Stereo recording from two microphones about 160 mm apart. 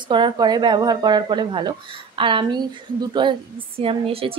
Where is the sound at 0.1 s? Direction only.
30° right (ahead or behind).